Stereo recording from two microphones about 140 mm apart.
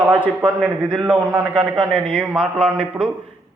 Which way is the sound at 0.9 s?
35° right (ahead or behind).